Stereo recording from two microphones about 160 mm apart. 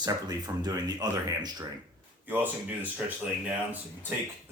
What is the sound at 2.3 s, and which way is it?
Speech, 10° right (ahead or behind).